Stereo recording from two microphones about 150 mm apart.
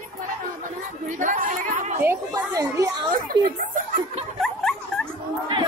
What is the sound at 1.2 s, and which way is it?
Chatter, 60° right (ahead or behind).